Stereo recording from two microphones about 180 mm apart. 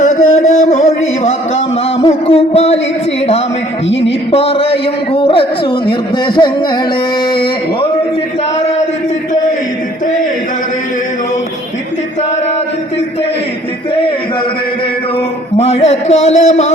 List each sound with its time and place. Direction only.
0.0 s a sound: 45° left (ahead or behind)
3.8 s a woman's voice: 90° left
4.3 s a man's voice: 30° left (ahead or behind)
15.5 s speech: 35° left (ahead or behind)